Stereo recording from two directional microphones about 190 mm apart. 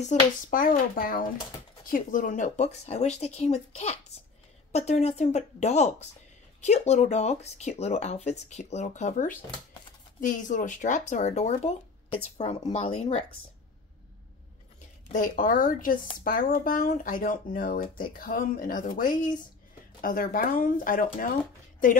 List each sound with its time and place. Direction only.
0.0 s speech: 40° left (ahead or behind)
15.1 s speech: 45° left (ahead or behind)